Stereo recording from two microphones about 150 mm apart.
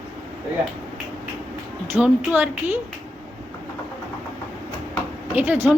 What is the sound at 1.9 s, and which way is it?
Speech, 10° right (ahead or behind).